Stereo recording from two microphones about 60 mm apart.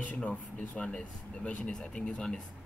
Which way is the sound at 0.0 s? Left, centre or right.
Left.